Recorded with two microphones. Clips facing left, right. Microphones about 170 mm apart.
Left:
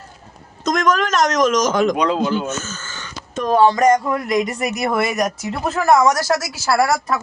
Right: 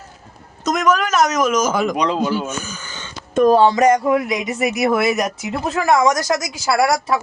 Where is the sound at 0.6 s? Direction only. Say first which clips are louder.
Even; 5° right (ahead or behind); by 3.8 s 25° right (ahead or behind).